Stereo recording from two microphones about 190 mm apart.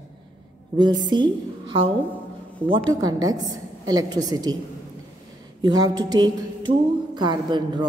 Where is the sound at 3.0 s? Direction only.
20° right (ahead or behind).